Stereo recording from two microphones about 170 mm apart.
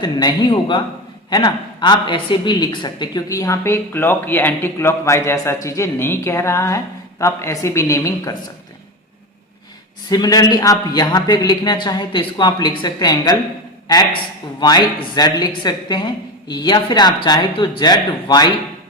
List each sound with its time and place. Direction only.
0.0 s a woman's voice: 25° left (ahead or behind)
10.1 s a woman's voice: 20° left (ahead or behind)